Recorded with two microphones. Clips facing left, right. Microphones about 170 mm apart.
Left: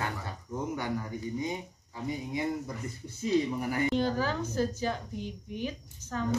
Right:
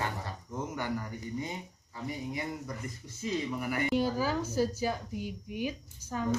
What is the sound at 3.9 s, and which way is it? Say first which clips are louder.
A woman's voice: even; 10° right (ahead or behind).